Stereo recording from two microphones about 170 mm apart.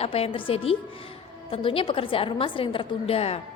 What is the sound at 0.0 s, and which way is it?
A woman's voice, 35° left (ahead or behind).